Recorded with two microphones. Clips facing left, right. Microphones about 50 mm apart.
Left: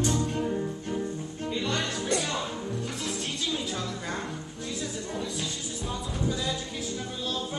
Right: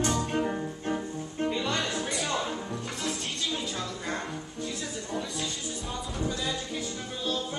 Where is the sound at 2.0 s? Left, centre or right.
Centre.